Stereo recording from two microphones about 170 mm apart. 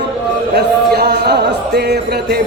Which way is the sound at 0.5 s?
75° right (ahead or behind).